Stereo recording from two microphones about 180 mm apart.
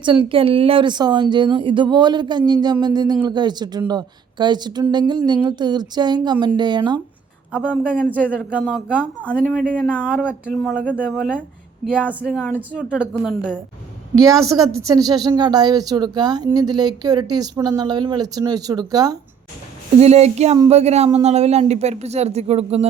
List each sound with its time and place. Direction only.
0.0 s speech: 30° right (ahead or behind)
7.5 s speech: 5° left (ahead or behind)
12.2 s a woman's voice: centre (ahead or behind)
14.4 s speech: 20° right (ahead or behind)
20.0 s speech: 35° right (ahead or behind)